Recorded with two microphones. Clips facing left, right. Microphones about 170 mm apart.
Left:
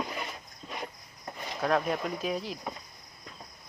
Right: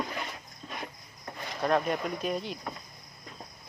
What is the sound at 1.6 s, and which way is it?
Speech, centre (ahead or behind).